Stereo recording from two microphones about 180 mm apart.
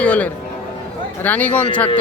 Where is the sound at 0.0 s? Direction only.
10° left (ahead or behind).